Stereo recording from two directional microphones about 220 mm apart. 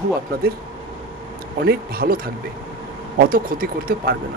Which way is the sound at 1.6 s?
45° right (ahead or behind).